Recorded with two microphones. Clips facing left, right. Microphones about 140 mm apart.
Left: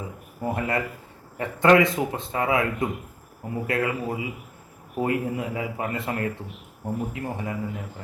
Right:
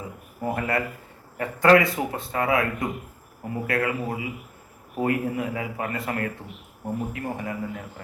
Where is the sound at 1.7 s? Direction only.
25° left (ahead or behind).